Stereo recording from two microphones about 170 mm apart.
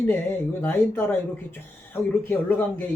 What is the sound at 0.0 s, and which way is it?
Speech, 10° left (ahead or behind).